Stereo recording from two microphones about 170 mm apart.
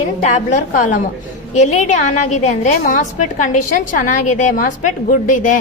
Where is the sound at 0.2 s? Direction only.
45° left (ahead or behind).